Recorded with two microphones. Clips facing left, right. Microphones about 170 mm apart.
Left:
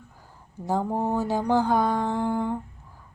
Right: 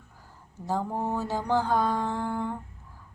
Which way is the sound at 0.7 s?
20° left (ahead or behind).